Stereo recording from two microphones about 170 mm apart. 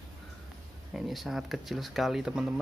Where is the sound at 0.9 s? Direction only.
Centre (ahead or behind).